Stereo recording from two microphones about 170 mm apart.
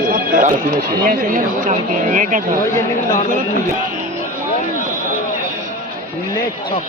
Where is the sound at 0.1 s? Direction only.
55° right (ahead or behind).